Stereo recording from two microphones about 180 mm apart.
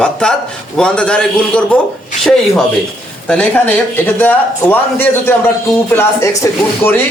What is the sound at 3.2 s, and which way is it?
A man's voice, 10° left (ahead or behind).